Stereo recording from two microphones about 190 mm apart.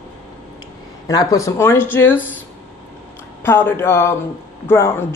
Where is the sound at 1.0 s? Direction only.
20° left (ahead or behind).